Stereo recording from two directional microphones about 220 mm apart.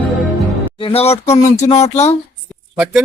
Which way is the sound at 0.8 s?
25° left (ahead or behind).